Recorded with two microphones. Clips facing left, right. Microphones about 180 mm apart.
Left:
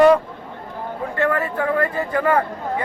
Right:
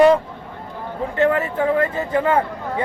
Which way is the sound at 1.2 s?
20° right (ahead or behind).